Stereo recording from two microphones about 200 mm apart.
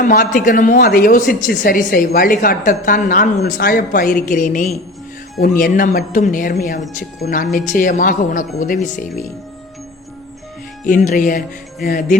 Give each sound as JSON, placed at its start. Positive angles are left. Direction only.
{"t": 0.0, "sound": "a woman's voice", "side_deg": 40}
{"t": 10.8, "sound": "speech", "side_deg": 40}